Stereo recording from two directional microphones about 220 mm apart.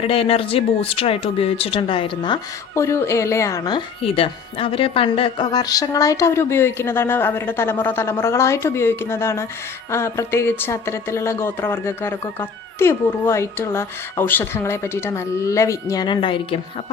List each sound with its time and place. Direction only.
0.0 s speech: 25° left (ahead or behind)
4.0 s a woman's voice: 25° left (ahead or behind)